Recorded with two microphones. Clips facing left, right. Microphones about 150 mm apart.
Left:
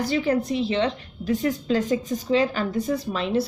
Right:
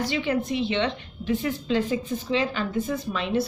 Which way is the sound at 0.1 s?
35° left (ahead or behind).